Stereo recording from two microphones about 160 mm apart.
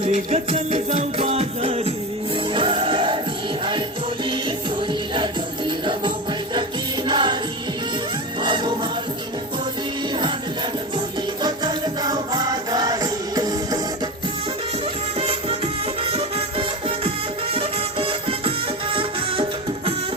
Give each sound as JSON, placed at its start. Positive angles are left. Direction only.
{"t": 0.0, "sound": "music", "side_deg": -40}
{"t": 4.3, "sound": "music", "side_deg": -30}
{"t": 8.4, "sound": "music", "side_deg": -30}
{"t": 11.4, "sound": "music", "side_deg": -25}
{"t": 15.2, "sound": "music", "side_deg": -35}